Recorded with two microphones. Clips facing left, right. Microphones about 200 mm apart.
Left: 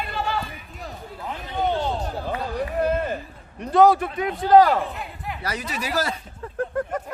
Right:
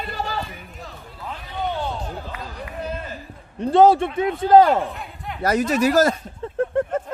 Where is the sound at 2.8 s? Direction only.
55° left (ahead or behind).